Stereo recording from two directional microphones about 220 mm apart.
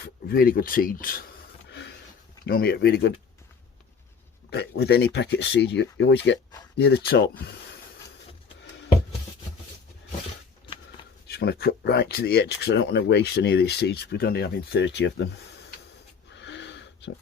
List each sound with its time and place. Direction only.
0.0 s speech: 45° left (ahead or behind)
2.5 s speech: 45° left (ahead or behind)
4.5 s speech: 50° left (ahead or behind)
11.3 s speech: 45° left (ahead or behind)
16.3 s wheeze: 55° left (ahead or behind)